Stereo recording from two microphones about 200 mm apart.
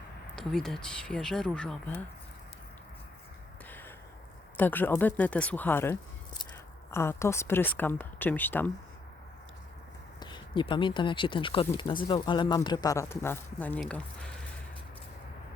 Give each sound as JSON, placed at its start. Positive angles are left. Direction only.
{"t": 0.3, "sound": "speech", "side_deg": 0}
{"t": 3.7, "sound": "a sound", "side_deg": 10}
{"t": 4.5, "sound": "speech", "side_deg": 10}
{"t": 10.2, "sound": "speech", "side_deg": 25}